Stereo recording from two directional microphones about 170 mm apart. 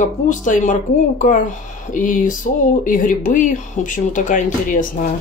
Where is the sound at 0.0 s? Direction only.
50° left (ahead or behind).